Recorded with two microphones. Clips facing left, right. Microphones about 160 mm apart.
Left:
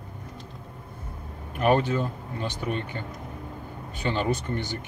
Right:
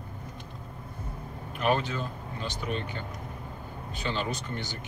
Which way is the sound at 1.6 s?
55° left (ahead or behind).